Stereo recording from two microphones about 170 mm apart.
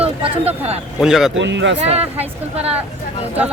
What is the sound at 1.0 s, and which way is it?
Speech, centre (ahead or behind).